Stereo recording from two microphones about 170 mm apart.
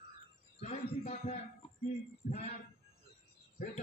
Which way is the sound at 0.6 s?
40° left (ahead or behind).